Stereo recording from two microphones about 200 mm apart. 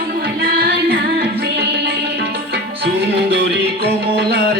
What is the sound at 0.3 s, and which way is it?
Music, 45° right (ahead or behind).